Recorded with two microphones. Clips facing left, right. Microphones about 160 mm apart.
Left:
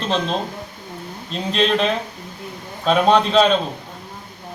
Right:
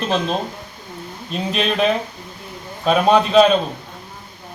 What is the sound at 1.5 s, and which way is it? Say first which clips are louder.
Speech: left 2 dB; 5° right (ahead or behind).